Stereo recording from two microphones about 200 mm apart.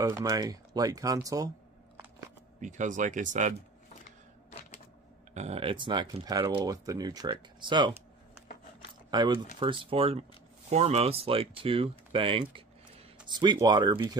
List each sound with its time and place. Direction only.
0.0 s speech: 15° right (ahead or behind)
2.6 s speech: 40° right (ahead or behind)
5.3 s speech: 30° right (ahead or behind)
9.1 s speech: 20° right (ahead or behind)